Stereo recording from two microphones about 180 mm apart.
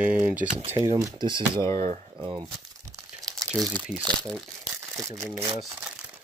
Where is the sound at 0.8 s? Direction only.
20° right (ahead or behind).